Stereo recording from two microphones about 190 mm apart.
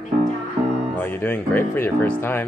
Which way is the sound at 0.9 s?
10° left (ahead or behind).